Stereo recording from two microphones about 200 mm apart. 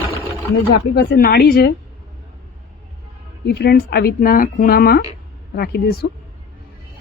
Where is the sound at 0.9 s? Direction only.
50° left (ahead or behind).